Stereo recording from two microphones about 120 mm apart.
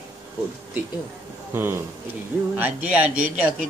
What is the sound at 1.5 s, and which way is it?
A man's voice, 20° right (ahead or behind).